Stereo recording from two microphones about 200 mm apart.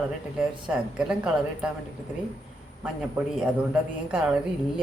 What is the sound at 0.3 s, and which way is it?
Speech, 5° right (ahead or behind).